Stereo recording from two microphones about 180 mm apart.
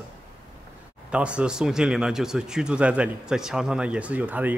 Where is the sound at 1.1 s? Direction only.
5° right (ahead or behind).